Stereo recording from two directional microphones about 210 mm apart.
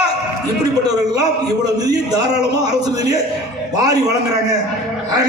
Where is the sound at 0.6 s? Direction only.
20° right (ahead or behind).